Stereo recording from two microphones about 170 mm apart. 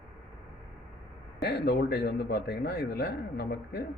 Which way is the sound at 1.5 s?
70° left (ahead or behind).